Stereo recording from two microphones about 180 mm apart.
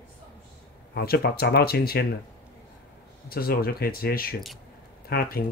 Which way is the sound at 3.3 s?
55° left (ahead or behind).